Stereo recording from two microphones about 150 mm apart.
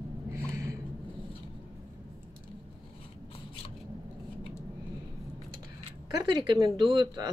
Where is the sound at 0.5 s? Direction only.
20° right (ahead or behind).